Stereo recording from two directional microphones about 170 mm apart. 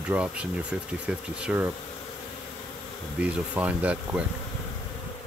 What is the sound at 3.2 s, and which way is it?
Speech, 10° right (ahead or behind).